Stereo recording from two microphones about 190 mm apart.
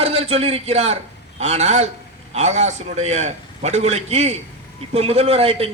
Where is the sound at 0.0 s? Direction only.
30° right (ahead or behind).